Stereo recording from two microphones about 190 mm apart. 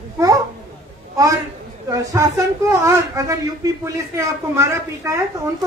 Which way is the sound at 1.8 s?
15° right (ahead or behind).